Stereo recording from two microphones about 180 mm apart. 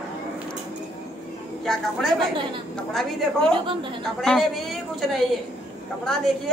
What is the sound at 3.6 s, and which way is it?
Speech, 30° right (ahead or behind).